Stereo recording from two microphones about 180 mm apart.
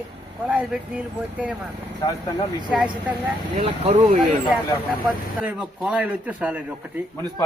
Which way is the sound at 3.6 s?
40° right (ahead or behind).